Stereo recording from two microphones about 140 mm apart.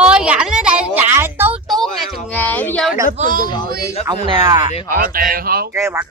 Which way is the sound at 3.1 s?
70° right (ahead or behind).